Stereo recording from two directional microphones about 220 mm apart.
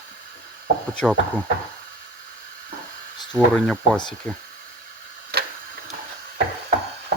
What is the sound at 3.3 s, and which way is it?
Speech, 5° left (ahead or behind).